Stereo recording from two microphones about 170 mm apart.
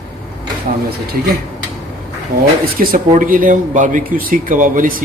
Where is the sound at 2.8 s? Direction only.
55° right (ahead or behind).